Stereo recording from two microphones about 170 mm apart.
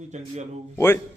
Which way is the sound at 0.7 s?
15° left (ahead or behind).